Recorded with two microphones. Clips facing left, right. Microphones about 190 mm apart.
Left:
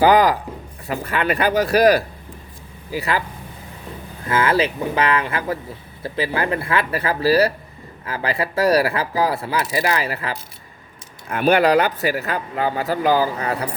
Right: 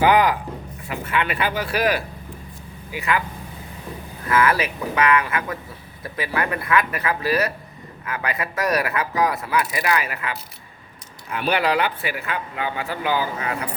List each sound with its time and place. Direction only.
0.0 s speech: 35° left (ahead or behind)
4.3 s speech: 30° left (ahead or behind)
11.3 s speech: 45° left (ahead or behind)